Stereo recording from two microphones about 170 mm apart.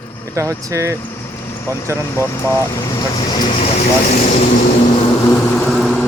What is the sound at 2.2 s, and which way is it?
Speech, 15° left (ahead or behind).